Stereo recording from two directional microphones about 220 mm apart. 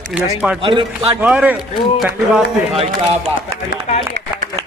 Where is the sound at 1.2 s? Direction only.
5° right (ahead or behind).